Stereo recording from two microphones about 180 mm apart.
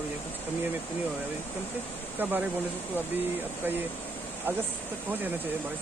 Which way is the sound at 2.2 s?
10° right (ahead or behind).